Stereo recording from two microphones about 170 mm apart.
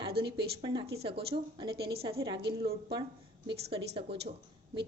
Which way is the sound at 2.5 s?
30° right (ahead or behind).